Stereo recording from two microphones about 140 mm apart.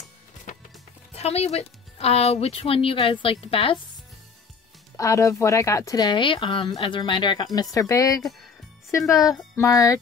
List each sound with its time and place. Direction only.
0.5 s music: 60° left (ahead or behind)
1.1 s speech: 45° left (ahead or behind)
4.9 s speech: 20° left (ahead or behind)
7.7 s speech: 25° left (ahead or behind)